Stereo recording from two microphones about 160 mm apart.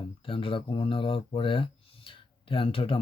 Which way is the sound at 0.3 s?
35° left (ahead or behind).